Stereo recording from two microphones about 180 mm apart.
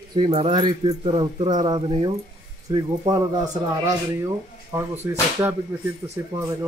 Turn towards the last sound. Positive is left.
turn(degrees=-15)  # may be behind; listen again after turning